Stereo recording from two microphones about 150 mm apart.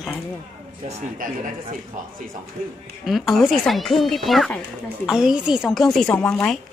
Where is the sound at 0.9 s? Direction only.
60° right (ahead or behind).